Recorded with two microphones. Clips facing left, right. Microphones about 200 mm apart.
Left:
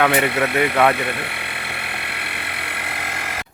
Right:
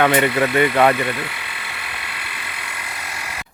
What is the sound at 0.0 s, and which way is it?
Speech, centre (ahead or behind).